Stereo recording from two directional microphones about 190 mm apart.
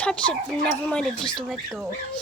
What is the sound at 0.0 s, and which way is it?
Speech, 5° left (ahead or behind).